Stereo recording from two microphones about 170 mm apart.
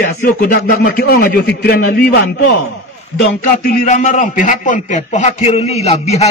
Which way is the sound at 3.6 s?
50° left (ahead or behind).